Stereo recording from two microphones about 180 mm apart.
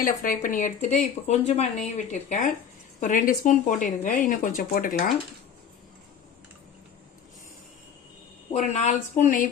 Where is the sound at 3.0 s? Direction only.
45° left (ahead or behind).